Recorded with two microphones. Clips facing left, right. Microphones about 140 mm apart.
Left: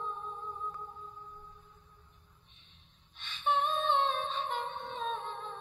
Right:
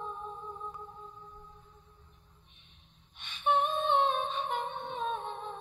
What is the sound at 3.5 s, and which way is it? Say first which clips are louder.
Humming: right 2 dB; 15° right (ahead or behind).